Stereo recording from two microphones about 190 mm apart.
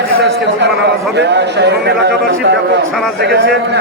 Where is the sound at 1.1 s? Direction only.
65° right (ahead or behind).